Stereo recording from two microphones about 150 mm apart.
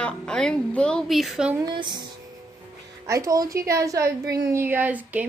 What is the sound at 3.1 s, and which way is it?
A woman's voice, 20° right (ahead or behind).